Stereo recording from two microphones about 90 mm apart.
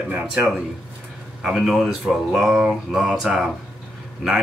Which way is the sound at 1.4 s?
5° right (ahead or behind).